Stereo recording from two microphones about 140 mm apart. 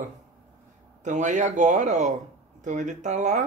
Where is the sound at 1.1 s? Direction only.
60° right (ahead or behind).